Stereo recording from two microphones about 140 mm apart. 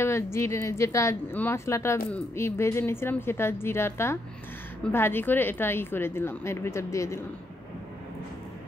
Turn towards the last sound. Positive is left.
turn(degrees=20)  # may be behind; listen again after turning